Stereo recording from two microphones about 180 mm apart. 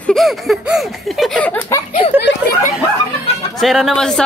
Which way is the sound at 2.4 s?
10° right (ahead or behind).